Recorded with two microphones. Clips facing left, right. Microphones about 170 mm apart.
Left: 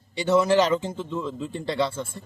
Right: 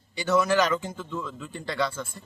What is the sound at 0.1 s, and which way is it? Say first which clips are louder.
Speech: left 3 dB; 25° left (ahead or behind).